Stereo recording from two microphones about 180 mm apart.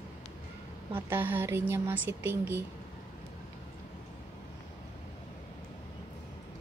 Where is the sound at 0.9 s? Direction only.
10° right (ahead or behind).